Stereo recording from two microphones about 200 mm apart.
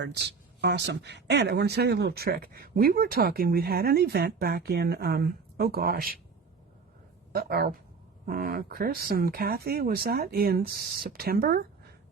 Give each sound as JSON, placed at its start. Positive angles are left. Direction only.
{"t": 0.0, "sound": "speech", "side_deg": -60}
{"t": 7.3, "sound": "speech", "side_deg": -50}